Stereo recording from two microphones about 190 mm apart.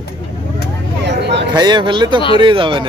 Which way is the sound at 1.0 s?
65° right (ahead or behind).